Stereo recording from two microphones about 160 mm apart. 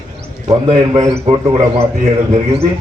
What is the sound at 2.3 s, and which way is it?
Speech, 40° right (ahead or behind).